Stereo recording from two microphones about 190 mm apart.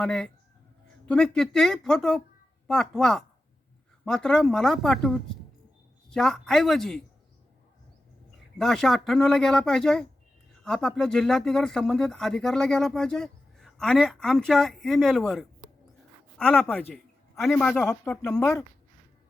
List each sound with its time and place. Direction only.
0.0 s speech: 5° left (ahead or behind)
8.5 s a man's voice: centre (ahead or behind)